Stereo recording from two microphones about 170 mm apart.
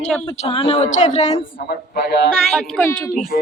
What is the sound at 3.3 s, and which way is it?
Speech, 55° left (ahead or behind).